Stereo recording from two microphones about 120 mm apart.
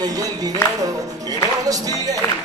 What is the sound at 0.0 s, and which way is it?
Music, 30° right (ahead or behind).